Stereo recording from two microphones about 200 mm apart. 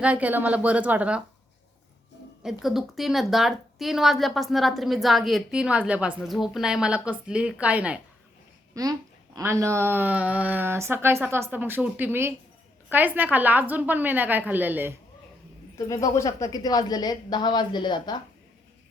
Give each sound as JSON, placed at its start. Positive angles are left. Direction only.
{"t": 0.0, "sound": "speech", "side_deg": -5}
{"t": 2.4, "sound": "a woman's voice", "side_deg": 0}
{"t": 8.7, "sound": "speech", "side_deg": -20}
{"t": 16.1, "sound": "speech", "side_deg": 15}